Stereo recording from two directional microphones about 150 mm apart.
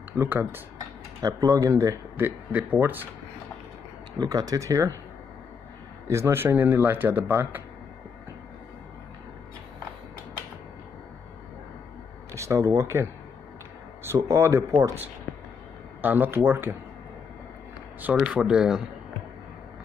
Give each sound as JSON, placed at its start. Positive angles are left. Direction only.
{"t": 0.2, "sound": "speech", "side_deg": -15}
{"t": 1.2, "sound": "speech", "side_deg": -25}
{"t": 4.2, "sound": "speech", "side_deg": -25}
{"t": 6.0, "sound": "speech", "side_deg": -20}
{"t": 12.3, "sound": "speech", "side_deg": -20}
{"t": 16.0, "sound": "speech", "side_deg": -10}
{"t": 18.0, "sound": "speech", "side_deg": -5}